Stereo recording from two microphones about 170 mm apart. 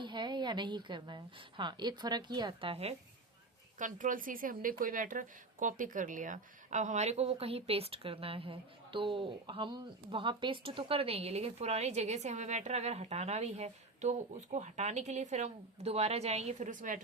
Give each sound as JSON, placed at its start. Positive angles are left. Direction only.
{"t": 0.0, "sound": "a woman's voice", "side_deg": -25}
{"t": 3.8, "sound": "a woman's voice", "side_deg": -50}